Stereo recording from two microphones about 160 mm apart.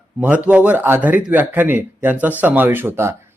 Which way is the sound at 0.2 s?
10° right (ahead or behind).